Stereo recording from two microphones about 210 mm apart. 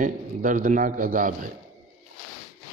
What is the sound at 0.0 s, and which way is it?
A man's voice, 40° right (ahead or behind).